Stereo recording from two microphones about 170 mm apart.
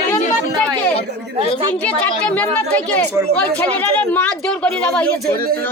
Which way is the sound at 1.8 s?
10° left (ahead or behind).